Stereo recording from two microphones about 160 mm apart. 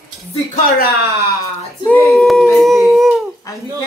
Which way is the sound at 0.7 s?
75° left (ahead or behind).